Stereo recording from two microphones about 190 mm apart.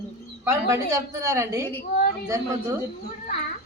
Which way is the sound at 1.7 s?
50° left (ahead or behind).